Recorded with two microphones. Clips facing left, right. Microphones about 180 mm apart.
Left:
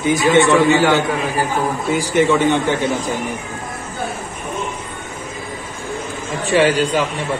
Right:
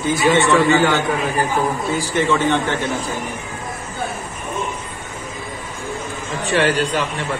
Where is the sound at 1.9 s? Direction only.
15° left (ahead or behind).